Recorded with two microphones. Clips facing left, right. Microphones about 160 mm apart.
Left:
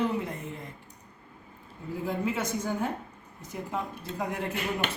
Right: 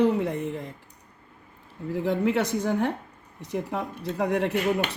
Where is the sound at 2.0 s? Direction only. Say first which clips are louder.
Right 6 dB; 75° right (ahead or behind).